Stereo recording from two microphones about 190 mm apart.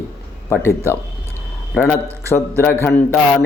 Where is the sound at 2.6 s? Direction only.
10° left (ahead or behind).